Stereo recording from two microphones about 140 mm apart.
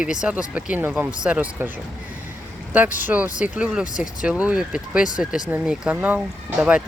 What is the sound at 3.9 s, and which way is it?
Speech, 65° left (ahead or behind).